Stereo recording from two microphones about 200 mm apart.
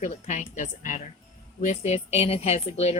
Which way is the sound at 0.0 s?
40° left (ahead or behind).